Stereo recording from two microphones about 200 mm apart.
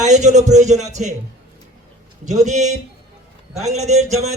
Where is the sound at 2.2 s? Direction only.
35° right (ahead or behind).